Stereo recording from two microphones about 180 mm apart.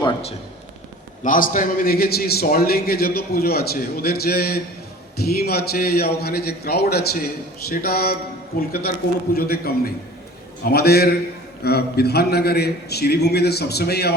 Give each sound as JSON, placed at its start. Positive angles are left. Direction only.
{"t": 0.0, "sound": "a sound", "side_deg": 35}
{"t": 1.2, "sound": "a man's voice", "side_deg": 50}
{"t": 9.3, "sound": "a man's voice", "side_deg": 60}